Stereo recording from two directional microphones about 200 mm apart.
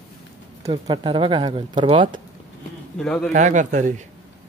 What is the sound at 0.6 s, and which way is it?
Speech, 25° right (ahead or behind).